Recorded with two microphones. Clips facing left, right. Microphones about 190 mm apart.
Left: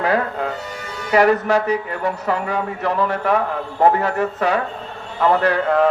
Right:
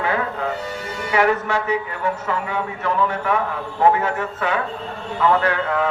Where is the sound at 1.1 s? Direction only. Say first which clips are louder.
Left 4 dB; 40° left (ahead or behind).